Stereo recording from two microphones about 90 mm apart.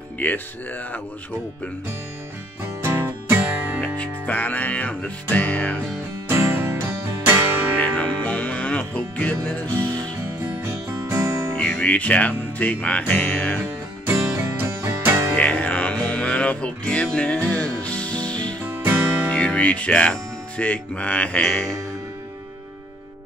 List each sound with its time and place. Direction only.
0.2 s speech: 20° left (ahead or behind)
2.8 s music: 30° right (ahead or behind)
3.8 s music: 15° left (ahead or behind)
6.2 s music: 30° right (ahead or behind)
7.8 s music: 15° left (ahead or behind)
10.6 s music: 30° right (ahead or behind)
11.5 s music: 15° left (ahead or behind)
14.3 s music: 30° right (ahead or behind)
15.3 s music: 15° left (ahead or behind)
18.9 s music: 25° right (ahead or behind)
19.3 s speech: 15° left (ahead or behind)